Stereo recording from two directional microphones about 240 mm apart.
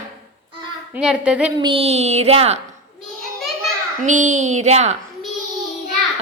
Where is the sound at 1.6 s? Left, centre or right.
Right.